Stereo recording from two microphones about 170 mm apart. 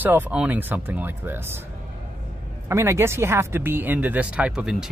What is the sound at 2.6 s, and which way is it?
Speech, 15° right (ahead or behind).